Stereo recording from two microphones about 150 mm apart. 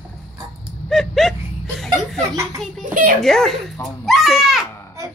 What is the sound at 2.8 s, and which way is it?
Children playing, 60° right (ahead or behind).